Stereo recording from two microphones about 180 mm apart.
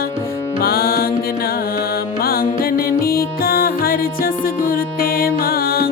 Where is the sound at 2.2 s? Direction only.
55° left (ahead or behind).